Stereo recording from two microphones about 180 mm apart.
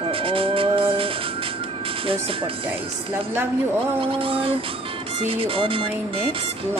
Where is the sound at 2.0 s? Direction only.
30° right (ahead or behind).